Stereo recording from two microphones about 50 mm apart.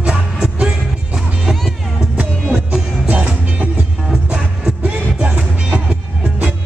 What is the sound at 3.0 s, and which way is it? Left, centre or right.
Music, right.